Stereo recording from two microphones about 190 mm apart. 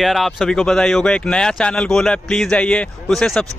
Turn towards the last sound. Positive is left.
turn(degrees=0)  # may be behind; listen again after turning